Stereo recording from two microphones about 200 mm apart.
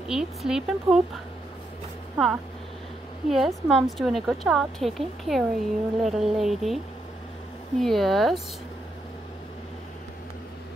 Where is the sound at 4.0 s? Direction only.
Centre (ahead or behind).